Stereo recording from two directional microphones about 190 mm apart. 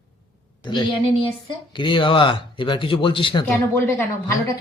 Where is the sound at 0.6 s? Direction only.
25° left (ahead or behind).